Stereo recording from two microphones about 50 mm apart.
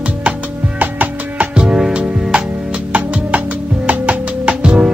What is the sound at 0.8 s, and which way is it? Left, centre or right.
Music, right.